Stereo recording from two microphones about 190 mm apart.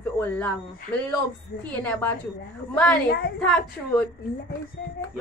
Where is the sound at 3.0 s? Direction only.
55° left (ahead or behind).